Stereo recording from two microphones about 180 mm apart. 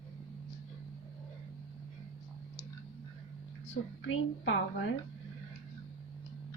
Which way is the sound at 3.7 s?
75° left (ahead or behind).